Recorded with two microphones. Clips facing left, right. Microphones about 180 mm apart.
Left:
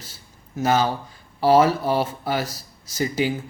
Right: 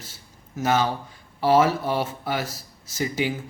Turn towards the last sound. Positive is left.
turn(degrees=35)  # may be behind; listen again after turning